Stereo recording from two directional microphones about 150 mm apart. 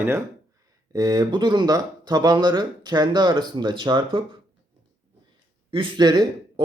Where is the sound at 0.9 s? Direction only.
25° right (ahead or behind).